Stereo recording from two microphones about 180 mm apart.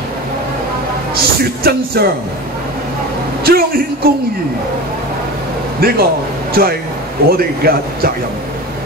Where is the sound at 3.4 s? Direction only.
55° right (ahead or behind).